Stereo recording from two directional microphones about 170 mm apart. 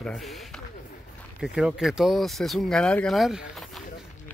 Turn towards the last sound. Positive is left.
turn(degrees=0)  # may be behind; listen again after turning